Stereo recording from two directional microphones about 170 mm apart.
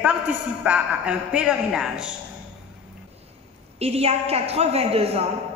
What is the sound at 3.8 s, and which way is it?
A woman's voice, 35° right (ahead or behind).